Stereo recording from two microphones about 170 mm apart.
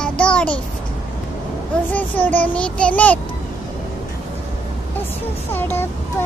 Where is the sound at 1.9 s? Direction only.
10° left (ahead or behind).